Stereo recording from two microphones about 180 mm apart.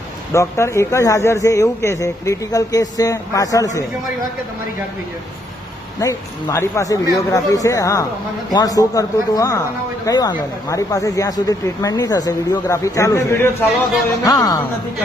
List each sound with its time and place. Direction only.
0.3 s speech: 15° left (ahead or behind)
6.0 s speech: 15° left (ahead or behind)